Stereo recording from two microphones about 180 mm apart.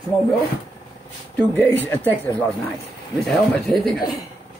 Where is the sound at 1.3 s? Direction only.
10° left (ahead or behind).